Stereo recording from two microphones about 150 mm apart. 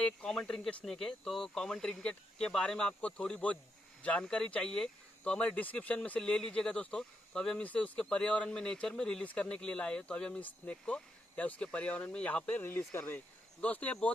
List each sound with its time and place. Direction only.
0.0 s speech: 5° left (ahead or behind)